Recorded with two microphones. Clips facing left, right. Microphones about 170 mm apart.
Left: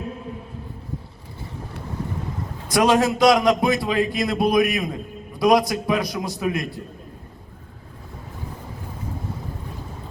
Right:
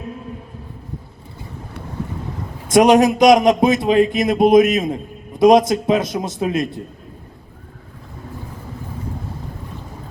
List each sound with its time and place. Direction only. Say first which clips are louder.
2.6 s a man's voice: right 6 dB; 20° right (ahead or behind)